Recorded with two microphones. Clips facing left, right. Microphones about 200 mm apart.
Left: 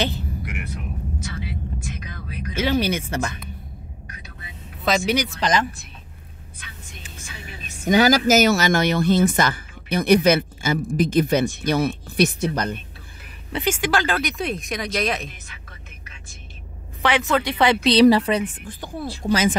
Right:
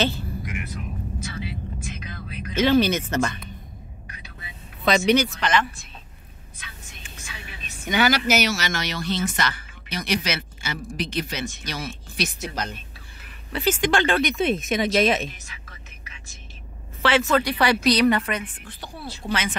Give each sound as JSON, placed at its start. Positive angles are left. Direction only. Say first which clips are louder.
{"t": 0.0, "sound": "vehicle", "louder": "right 1 dB", "side_deg": 20}
{"t": 1.3, "sound": "vehicle", "louder": "left 1 dB", "side_deg": 50}
{"t": 2.5, "sound": "speech", "louder": "right 3 dB", "side_deg": 10}
{"t": 4.8, "sound": "speech", "louder": "right 1 dB", "side_deg": 0}
{"t": 5.4, "sound": "speech", "louder": "left 2 dB", "side_deg": 35}
{"t": 7.8, "sound": "speech", "louder": "left 5 dB", "side_deg": 40}
{"t": 13.5, "sound": "speech", "louder": "even", "side_deg": 20}
{"t": 13.7, "sound": "speech", "louder": "right 4 dB", "side_deg": 5}
{"t": 17.0, "sound": "a woman's voice", "louder": "even", "side_deg": 20}
{"t": 18.1, "sound": "speech", "louder": "left 6 dB", "side_deg": 30}
{"t": 18.8, "sound": "speech", "louder": "left 6 dB", "side_deg": 45}